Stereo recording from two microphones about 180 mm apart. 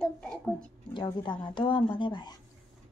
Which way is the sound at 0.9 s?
25° left (ahead or behind).